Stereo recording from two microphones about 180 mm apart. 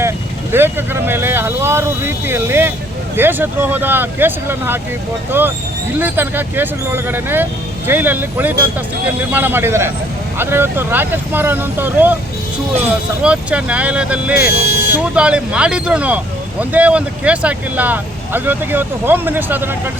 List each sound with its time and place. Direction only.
0.5 s speech: 10° right (ahead or behind)
13.2 s speech: 5° right (ahead or behind)
14.5 s speech: 60° left (ahead or behind)
15.1 s speech: 5° right (ahead or behind)